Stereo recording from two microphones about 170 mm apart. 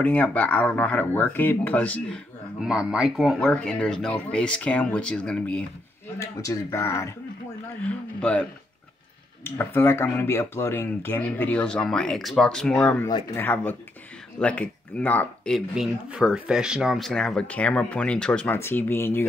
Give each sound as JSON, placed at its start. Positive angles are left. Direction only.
{"t": 0.0, "sound": "speech", "side_deg": 10}
{"t": 2.6, "sound": "speech", "side_deg": -5}
{"t": 6.1, "sound": "speech", "side_deg": 20}